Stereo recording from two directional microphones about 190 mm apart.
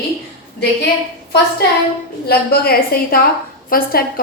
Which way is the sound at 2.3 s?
55° left (ahead or behind).